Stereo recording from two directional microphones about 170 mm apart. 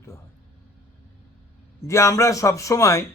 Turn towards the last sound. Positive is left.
turn(degrees=20)  # may be behind; listen again after turning